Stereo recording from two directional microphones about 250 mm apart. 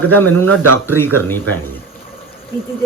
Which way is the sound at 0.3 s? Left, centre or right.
Right.